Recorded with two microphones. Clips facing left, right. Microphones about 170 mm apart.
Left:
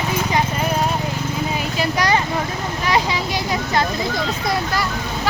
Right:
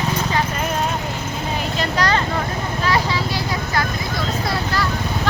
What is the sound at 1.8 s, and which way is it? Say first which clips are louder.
Vehicle: left 1 dB; 15° left (ahead or behind).